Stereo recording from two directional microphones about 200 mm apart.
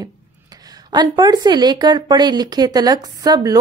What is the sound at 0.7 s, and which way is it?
Speech, 20° right (ahead or behind).